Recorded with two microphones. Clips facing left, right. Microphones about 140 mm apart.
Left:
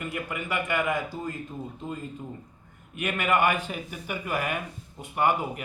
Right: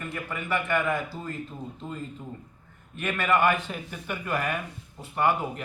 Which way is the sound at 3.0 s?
15° left (ahead or behind).